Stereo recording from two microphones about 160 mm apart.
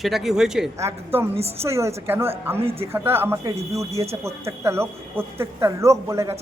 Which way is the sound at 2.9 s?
15° right (ahead or behind).